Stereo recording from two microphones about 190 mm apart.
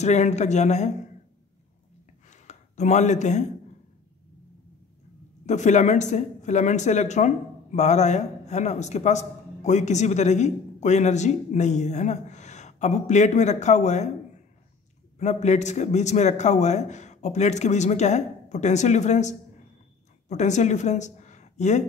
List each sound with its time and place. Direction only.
0.0 s speech: 35° left (ahead or behind)
2.2 s a sound: 40° left (ahead or behind)
5.5 s speech: 40° left (ahead or behind)
15.1 s a woman's voice: 35° left (ahead or behind)